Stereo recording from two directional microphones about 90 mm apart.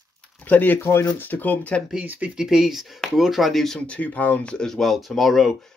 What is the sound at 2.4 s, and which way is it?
Speech, 5° right (ahead or behind).